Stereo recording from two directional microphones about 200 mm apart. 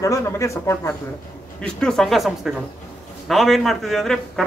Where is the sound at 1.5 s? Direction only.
5° left (ahead or behind).